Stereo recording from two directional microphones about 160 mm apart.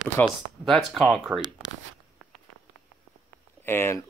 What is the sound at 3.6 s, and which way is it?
Speech, 15° left (ahead or behind).